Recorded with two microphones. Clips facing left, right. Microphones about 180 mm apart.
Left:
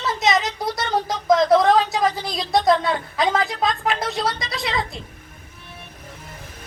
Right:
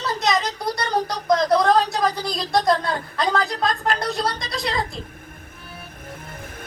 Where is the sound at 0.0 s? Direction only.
Centre (ahead or behind).